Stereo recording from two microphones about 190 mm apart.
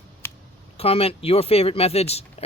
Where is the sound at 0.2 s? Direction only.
10° left (ahead or behind).